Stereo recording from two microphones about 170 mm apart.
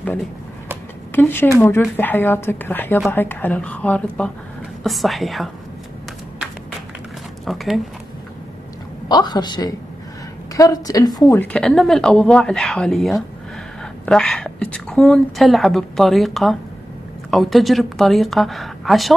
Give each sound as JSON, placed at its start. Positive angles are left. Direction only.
{"t": 0.0, "sound": "a woman's voice", "side_deg": 10}
{"t": 7.4, "sound": "a woman's voice", "side_deg": 0}
{"t": 9.1, "sound": "a woman's voice", "side_deg": 25}
{"t": 11.3, "sound": "a woman's voice", "side_deg": 5}